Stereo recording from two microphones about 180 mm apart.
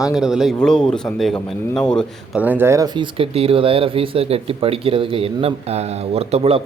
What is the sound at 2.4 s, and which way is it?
Speech, 10° right (ahead or behind).